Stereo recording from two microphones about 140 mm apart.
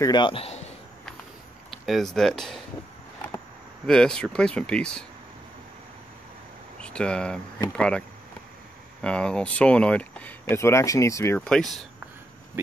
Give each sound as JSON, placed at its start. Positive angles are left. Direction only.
{"t": 0.0, "sound": "a man's voice", "side_deg": 30}
{"t": 1.9, "sound": "speech", "side_deg": 0}
{"t": 3.8, "sound": "speech", "side_deg": 5}
{"t": 6.8, "sound": "speech", "side_deg": 5}
{"t": 9.0, "sound": "speech", "side_deg": 5}
{"t": 11.3, "sound": "speech", "side_deg": 5}